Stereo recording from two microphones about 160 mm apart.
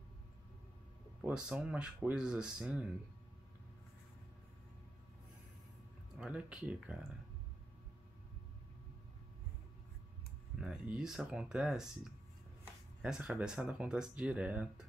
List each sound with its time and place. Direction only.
1.2 s speech: 5° right (ahead or behind)
6.1 s speech: 5° right (ahead or behind)
10.6 s speech: 5° right (ahead or behind)